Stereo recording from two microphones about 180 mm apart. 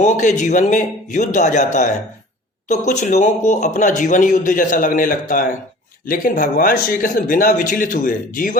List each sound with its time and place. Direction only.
0.0 s speech: 40° left (ahead or behind)